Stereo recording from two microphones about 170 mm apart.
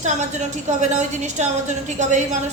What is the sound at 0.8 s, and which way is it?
A woman's voice, 45° right (ahead or behind).